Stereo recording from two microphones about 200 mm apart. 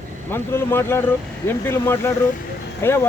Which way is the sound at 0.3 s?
10° left (ahead or behind).